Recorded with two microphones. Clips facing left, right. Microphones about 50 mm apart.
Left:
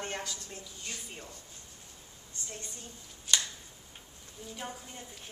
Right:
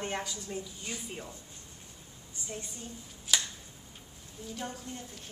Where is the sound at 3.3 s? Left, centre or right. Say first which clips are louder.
Even; centre.